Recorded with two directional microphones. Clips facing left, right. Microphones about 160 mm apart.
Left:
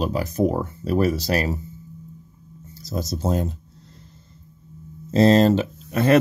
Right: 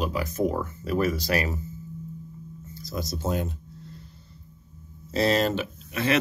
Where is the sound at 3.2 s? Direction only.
35° left (ahead or behind).